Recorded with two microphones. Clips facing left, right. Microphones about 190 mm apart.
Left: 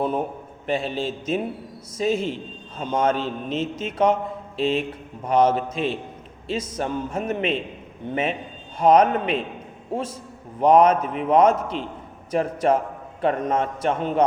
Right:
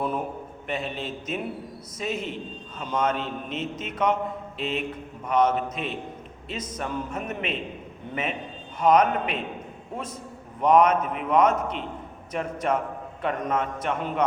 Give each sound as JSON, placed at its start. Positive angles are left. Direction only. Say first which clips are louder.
{"t": 0.0, "sound": "a man's voice", "louder": "left 4 dB", "side_deg": 30}